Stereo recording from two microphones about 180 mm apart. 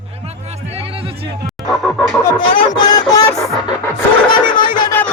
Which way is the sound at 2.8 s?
20° left (ahead or behind).